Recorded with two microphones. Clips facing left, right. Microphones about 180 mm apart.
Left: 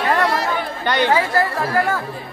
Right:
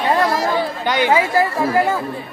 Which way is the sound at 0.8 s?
10° right (ahead or behind).